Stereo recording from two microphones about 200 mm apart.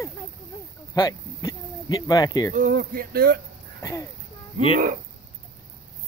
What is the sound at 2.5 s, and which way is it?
Speech, 40° right (ahead or behind).